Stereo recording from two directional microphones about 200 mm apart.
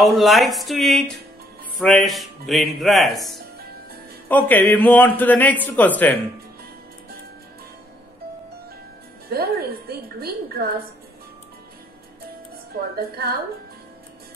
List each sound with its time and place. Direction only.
0.0 s a man's voice: centre (ahead or behind)
9.3 s a woman's voice: 50° right (ahead or behind)
12.9 s a woman's voice: 50° right (ahead or behind)